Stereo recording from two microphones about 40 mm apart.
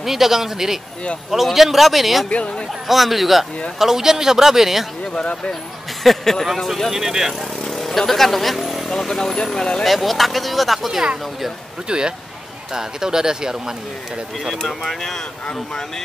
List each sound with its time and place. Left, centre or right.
0.0 s speech: centre
2.2 s speech: left
2.9 s speech: centre
5.1 s speech: left
6.0 s speech: centre
7.7 s speech: centre
9.8 s speech: centre
11.9 s speech: right
14.7 s speech: centre
15.0 s speech: centre